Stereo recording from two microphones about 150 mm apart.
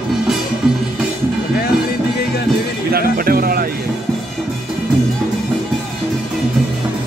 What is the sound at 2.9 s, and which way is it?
Music, 85° right.